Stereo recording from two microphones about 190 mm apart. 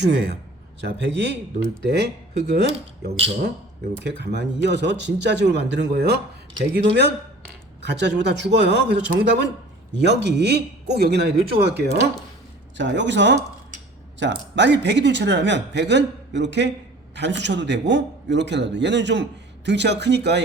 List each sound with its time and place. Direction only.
0.0 s speech: 65° right (ahead or behind)